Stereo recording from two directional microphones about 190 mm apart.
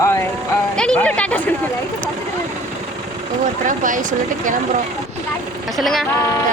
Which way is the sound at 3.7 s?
45° right (ahead or behind).